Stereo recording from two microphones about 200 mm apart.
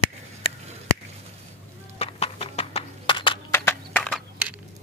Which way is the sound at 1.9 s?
30° left (ahead or behind).